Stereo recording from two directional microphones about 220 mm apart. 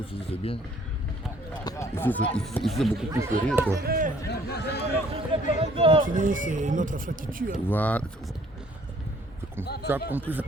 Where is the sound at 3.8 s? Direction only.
40° right (ahead or behind).